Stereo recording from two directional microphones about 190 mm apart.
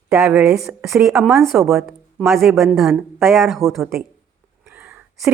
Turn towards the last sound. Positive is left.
turn(degrees=-10)  # may be behind; listen again after turning